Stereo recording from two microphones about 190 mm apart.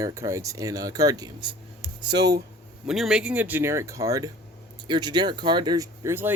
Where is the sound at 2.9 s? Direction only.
5° right (ahead or behind).